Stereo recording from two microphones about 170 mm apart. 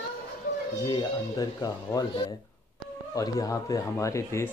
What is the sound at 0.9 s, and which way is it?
Speech, 25° left (ahead or behind).